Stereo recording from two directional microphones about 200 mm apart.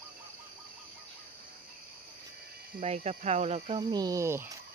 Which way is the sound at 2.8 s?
35° right (ahead or behind).